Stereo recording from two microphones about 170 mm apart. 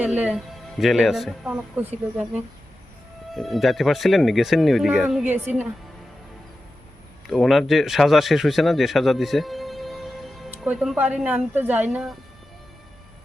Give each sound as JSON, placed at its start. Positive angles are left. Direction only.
{"t": 0.2, "sound": "speech", "side_deg": -5}
{"t": 3.3, "sound": "speech", "side_deg": 0}
{"t": 5.2, "sound": "a woman's voice", "side_deg": -10}
{"t": 7.3, "sound": "speech", "side_deg": 0}